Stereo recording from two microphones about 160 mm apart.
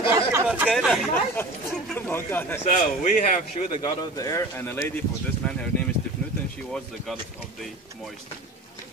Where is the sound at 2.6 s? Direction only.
50° left (ahead or behind).